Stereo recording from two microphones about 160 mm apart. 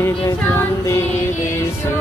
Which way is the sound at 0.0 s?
15° left (ahead or behind).